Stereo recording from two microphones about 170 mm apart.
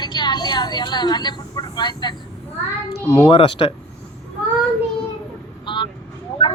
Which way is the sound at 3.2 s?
30° left (ahead or behind).